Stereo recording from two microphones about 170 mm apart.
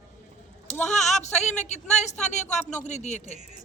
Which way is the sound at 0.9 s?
45° left (ahead or behind).